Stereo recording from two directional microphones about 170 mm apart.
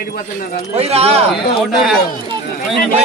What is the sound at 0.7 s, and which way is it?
Speech, 35° right (ahead or behind).